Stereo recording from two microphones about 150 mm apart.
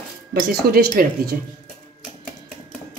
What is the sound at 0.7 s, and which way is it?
Speech, 90° right.